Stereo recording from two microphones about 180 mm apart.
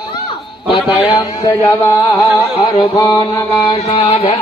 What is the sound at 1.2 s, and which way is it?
Speech, 20° left (ahead or behind).